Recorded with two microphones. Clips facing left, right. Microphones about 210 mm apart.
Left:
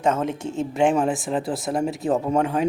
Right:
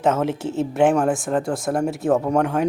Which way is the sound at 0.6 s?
Centre (ahead or behind).